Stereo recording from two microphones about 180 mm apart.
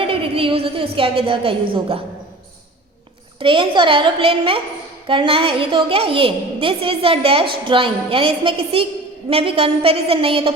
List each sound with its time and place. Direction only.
0.0 s a sound: 30° right (ahead or behind)
0.9 s a woman's voice: 30° right (ahead or behind)
3.4 s a woman's voice: 30° right (ahead or behind)